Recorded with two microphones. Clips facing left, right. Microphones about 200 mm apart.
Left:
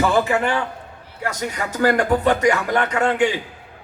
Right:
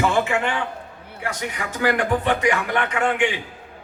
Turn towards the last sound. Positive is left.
turn(degrees=40)  # may be behind; listen again after turning